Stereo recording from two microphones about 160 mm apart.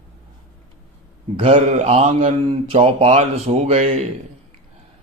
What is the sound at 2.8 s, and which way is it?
Speech, 45° right (ahead or behind).